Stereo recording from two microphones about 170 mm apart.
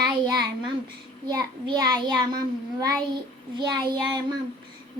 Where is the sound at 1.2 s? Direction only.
25° right (ahead or behind).